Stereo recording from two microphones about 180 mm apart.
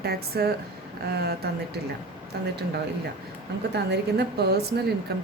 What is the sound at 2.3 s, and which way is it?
Speech, 70° right (ahead or behind).